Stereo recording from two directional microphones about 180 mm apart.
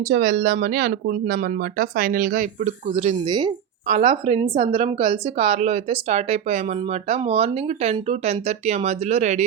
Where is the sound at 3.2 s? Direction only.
25° right (ahead or behind).